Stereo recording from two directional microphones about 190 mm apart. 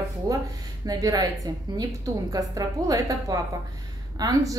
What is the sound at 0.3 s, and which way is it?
A woman's voice, 20° right (ahead or behind).